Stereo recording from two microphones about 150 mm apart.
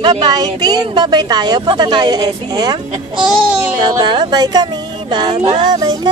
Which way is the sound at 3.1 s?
5° right (ahead or behind).